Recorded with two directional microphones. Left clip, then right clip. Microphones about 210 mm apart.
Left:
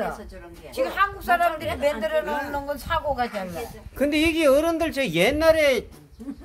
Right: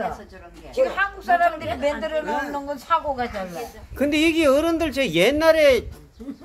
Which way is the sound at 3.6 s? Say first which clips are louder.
Right 1 dB; centre (ahead or behind).